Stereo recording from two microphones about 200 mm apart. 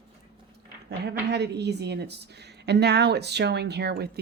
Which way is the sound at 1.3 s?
55° right (ahead or behind).